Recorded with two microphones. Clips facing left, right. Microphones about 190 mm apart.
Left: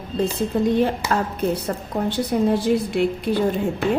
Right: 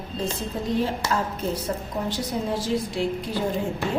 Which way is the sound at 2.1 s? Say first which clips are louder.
Left 10 dB; 60° left (ahead or behind).